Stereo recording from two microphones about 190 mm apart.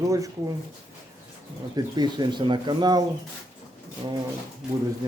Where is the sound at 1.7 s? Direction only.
20° right (ahead or behind).